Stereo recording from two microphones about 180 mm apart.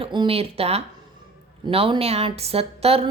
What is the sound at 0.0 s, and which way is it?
A woman's voice, 30° right (ahead or behind).